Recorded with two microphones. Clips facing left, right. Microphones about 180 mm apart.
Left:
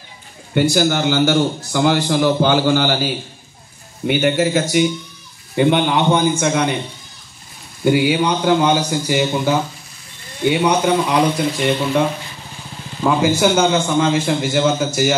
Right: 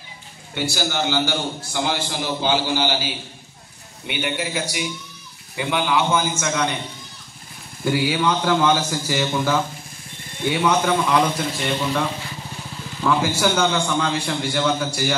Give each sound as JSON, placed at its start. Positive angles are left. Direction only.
{"t": 0.7, "sound": "a man's voice", "side_deg": 50}
{"t": 5.7, "sound": "a man's voice", "side_deg": 35}
{"t": 7.8, "sound": "a man's voice", "side_deg": 20}